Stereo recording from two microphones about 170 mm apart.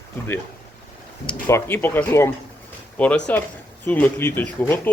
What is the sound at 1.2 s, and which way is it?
Speech, 10° left (ahead or behind).